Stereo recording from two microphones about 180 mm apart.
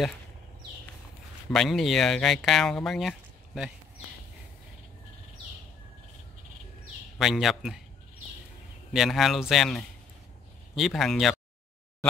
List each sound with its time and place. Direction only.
1.5 s speech: centre (ahead or behind)
6.8 s a sound: centre (ahead or behind)
8.9 s speech: centre (ahead or behind)